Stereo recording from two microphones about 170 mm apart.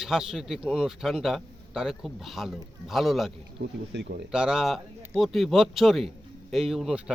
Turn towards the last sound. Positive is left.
turn(degrees=0)  # may be behind; listen again after turning